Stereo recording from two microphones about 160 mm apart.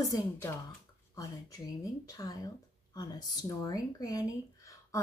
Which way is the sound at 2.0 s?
20° left (ahead or behind).